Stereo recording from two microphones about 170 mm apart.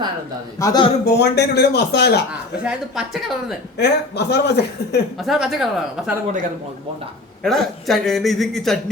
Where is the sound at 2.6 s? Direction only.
5° right (ahead or behind).